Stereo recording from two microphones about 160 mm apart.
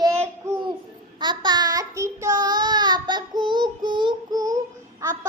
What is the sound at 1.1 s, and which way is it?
Child singing, 25° right (ahead or behind).